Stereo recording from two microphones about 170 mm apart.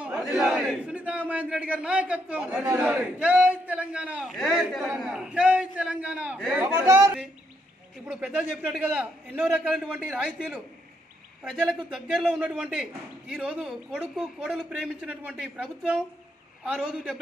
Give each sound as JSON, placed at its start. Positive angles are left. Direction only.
{"t": 0.0, "sound": "a man's voice", "side_deg": -5}
{"t": 11.9, "sound": "a man's voice", "side_deg": 0}